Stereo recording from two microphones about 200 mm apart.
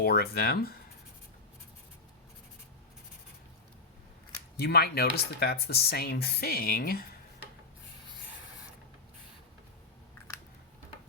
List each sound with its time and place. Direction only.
0.0 s speech: 50° left (ahead or behind)
4.6 s speech: 50° left (ahead or behind)